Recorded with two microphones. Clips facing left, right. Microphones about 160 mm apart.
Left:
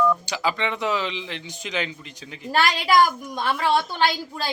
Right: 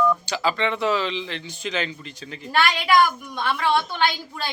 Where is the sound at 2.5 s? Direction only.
35° left (ahead or behind).